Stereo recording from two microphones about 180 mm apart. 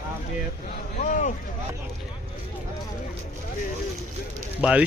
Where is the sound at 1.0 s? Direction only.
45° left (ahead or behind).